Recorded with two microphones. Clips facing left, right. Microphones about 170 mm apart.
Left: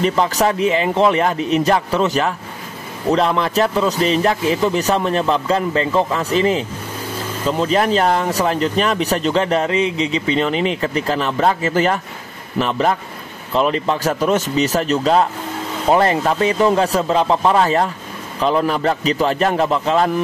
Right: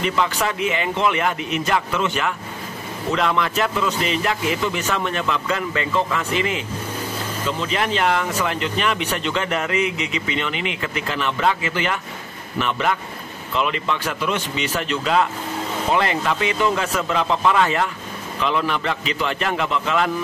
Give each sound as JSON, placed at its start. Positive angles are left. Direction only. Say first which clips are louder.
{"t": 0.0, "sound": "speech", "louder": "left 5 dB", "side_deg": 35}